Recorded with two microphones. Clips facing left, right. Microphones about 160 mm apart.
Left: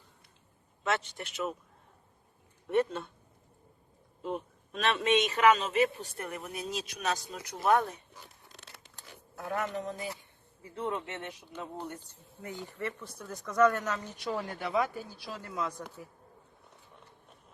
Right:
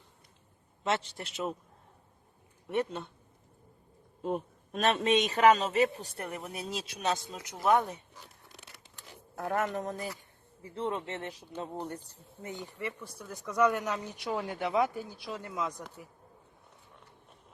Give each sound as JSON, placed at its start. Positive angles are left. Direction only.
{"t": 0.9, "sound": "speech", "side_deg": -30}
{"t": 2.6, "sound": "speech", "side_deg": -15}
{"t": 4.2, "sound": "a man's voice", "side_deg": -45}
{"t": 9.3, "sound": "speech", "side_deg": -50}
{"t": 10.6, "sound": "a man's voice", "side_deg": -25}
{"t": 12.4, "sound": "speech", "side_deg": -20}